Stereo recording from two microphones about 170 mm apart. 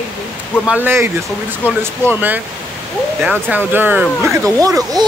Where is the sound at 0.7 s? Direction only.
10° right (ahead or behind).